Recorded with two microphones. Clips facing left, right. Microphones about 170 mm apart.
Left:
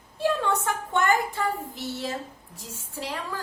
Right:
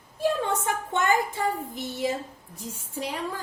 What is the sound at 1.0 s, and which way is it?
A woman's voice, 20° right (ahead or behind).